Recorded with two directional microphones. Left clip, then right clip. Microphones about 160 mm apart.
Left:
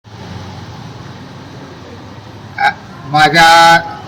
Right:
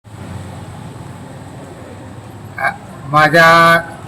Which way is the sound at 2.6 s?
25° right (ahead or behind).